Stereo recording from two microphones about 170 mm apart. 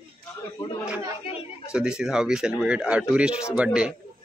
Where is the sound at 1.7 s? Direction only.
5° right (ahead or behind).